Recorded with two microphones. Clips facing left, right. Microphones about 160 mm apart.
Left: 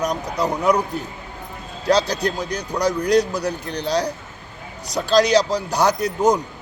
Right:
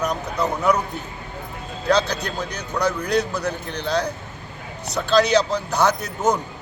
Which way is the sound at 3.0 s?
35° left (ahead or behind).